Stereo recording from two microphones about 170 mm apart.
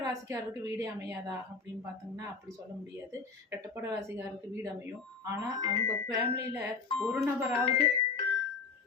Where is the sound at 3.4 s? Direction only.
15° right (ahead or behind).